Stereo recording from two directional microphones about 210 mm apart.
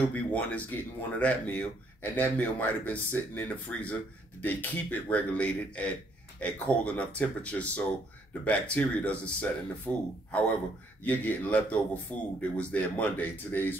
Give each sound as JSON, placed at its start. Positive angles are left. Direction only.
{"t": 0.0, "sound": "a man's voice", "side_deg": 5}
{"t": 11.1, "sound": "a man's voice", "side_deg": 5}